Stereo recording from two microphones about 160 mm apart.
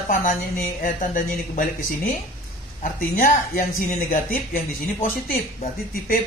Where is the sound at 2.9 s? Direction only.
55° left (ahead or behind).